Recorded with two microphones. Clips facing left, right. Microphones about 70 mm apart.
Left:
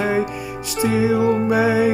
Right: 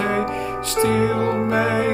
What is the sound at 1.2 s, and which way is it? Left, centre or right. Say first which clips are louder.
Music: left 3 dB; right.